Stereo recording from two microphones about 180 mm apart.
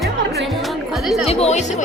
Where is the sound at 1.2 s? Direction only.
35° left (ahead or behind).